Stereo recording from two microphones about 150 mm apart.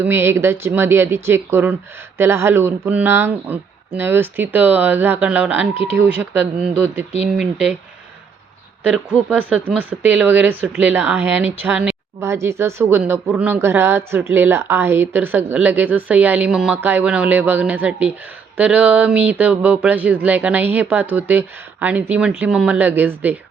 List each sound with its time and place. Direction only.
0.0 s speech: 15° right (ahead or behind)
8.8 s speech: 10° right (ahead or behind)